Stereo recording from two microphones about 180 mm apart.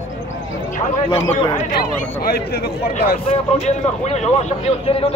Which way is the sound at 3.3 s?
40° left (ahead or behind).